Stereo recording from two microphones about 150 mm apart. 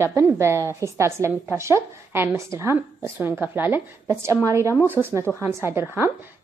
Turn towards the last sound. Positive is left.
turn(degrees=-15)  # may be behind; listen again after turning